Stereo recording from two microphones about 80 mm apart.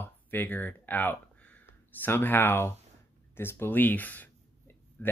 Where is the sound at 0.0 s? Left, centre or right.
Left.